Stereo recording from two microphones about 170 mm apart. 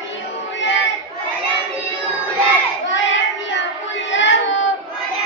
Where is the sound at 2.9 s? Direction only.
90° left.